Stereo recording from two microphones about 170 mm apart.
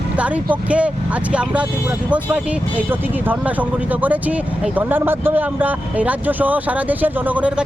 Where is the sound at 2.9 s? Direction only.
10° right (ahead or behind).